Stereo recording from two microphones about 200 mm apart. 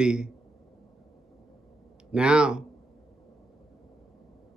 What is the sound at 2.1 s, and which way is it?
Speech, 5° right (ahead or behind).